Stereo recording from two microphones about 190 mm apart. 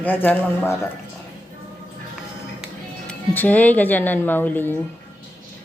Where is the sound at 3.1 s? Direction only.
10° left (ahead or behind).